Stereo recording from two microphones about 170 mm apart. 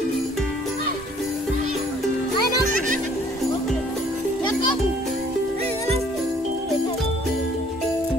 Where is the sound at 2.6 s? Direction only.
50° right (ahead or behind).